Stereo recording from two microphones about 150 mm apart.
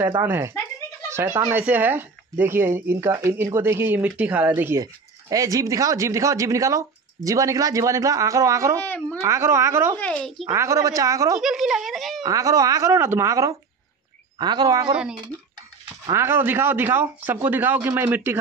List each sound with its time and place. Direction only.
0.2 s speech: 15° right (ahead or behind)
1.0 s a sound: 15° right (ahead or behind)
1.5 s speech: 10° right (ahead or behind)
8.8 s a woman's voice: 10° left (ahead or behind)
9.2 s speech: 20° right (ahead or behind)
9.9 s speech: 10° left (ahead or behind)
10.5 s speech: 20° right (ahead or behind)
11.4 s speech: centre (ahead or behind)
12.2 s speech: 25° right (ahead or behind)
16.1 s speech: 15° right (ahead or behind)